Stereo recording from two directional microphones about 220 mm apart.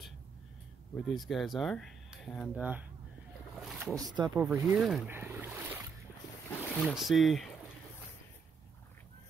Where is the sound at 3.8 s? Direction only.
15° right (ahead or behind).